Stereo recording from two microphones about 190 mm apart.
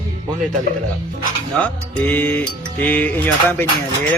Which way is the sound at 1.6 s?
10° left (ahead or behind).